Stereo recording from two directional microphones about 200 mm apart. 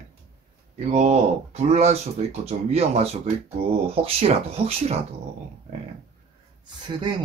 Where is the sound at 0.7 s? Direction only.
35° right (ahead or behind).